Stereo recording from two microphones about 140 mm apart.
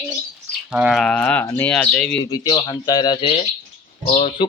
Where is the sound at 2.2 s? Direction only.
30° left (ahead or behind); by 4.4 s 45° left (ahead or behind).